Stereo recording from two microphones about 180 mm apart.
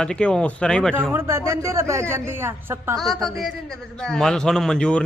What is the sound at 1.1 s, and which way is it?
A woman's voice, 15° right (ahead or behind).